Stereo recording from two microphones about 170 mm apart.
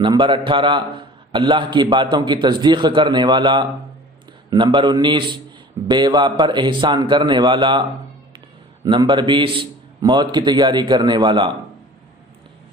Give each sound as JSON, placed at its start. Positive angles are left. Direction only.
{"t": 0.0, "sound": "a man's voice", "side_deg": -30}